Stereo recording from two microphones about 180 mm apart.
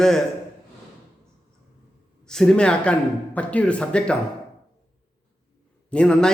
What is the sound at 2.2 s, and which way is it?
A man's voice, 5° left (ahead or behind).